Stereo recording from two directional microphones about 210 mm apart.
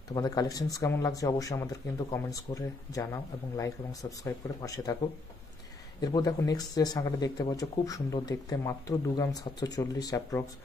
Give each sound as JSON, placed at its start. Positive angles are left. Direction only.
{"t": 0.1, "sound": "speech", "side_deg": 20}
{"t": 5.9, "sound": "speech", "side_deg": 20}